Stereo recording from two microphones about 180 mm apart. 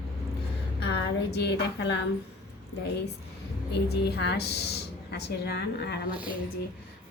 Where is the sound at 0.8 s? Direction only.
65° left (ahead or behind).